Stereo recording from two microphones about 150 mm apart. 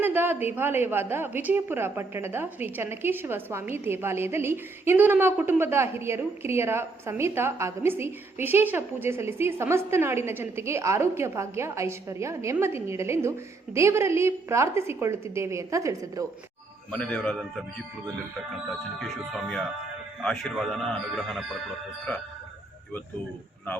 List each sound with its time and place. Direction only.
0.0 s a woman's voice: 15° right (ahead or behind)
16.9 s a man's voice: 5° left (ahead or behind)
18.9 s speech: centre (ahead or behind)